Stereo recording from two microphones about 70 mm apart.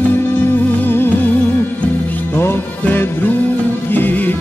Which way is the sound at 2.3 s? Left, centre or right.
Left.